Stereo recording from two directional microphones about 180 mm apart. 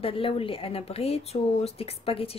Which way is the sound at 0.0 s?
30° left (ahead or behind).